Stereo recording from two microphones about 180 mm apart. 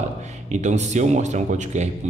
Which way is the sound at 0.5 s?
40° right (ahead or behind).